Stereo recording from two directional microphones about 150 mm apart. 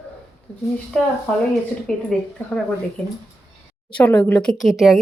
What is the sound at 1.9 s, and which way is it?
Speech, 5° left (ahead or behind).